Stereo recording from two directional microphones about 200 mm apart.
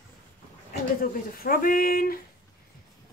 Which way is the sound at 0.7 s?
45° left (ahead or behind).